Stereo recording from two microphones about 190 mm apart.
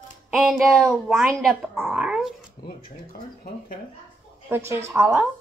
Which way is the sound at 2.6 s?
20° left (ahead or behind).